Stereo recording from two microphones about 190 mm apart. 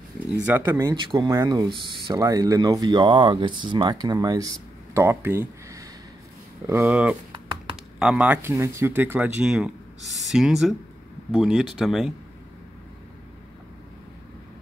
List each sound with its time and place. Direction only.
0.5 s speech: 10° right (ahead or behind)
6.9 s speech: 5° right (ahead or behind)